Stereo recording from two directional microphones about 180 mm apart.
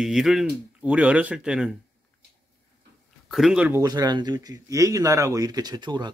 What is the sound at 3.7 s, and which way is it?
Speech, 20° right (ahead or behind).